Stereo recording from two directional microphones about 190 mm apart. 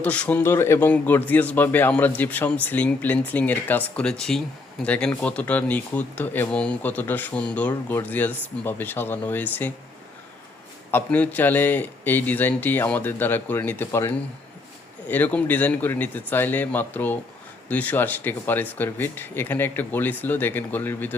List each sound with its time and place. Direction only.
0.0 s speech: 5° left (ahead or behind)
10.9 s speech: 10° left (ahead or behind)